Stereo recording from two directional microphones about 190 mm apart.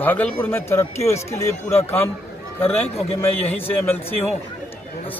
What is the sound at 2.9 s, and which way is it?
Speech, 30° left (ahead or behind).